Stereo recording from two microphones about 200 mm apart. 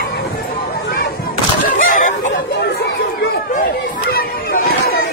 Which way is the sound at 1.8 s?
40° left (ahead or behind).